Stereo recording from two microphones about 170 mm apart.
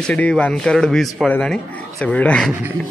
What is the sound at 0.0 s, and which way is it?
A man's voice, 5° left (ahead or behind).